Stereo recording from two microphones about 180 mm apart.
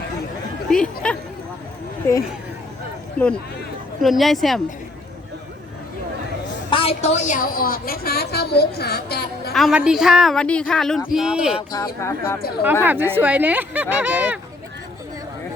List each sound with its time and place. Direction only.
0.7 s speech: 5° left (ahead or behind)
3.2 s a woman's voice: 5° left (ahead or behind)
6.7 s a woman's voice: 30° left (ahead or behind); by 9.5 s 65° left (ahead or behind)
9.5 s a woman's voice: centre (ahead or behind)
11.7 s speech: 20° left (ahead or behind)
12.8 s speech: 10° right (ahead or behind)